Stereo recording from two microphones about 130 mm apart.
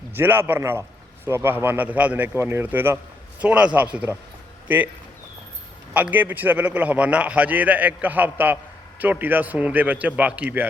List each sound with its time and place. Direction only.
0.1 s speech: 15° right (ahead or behind)
5.9 s speech: 10° right (ahead or behind)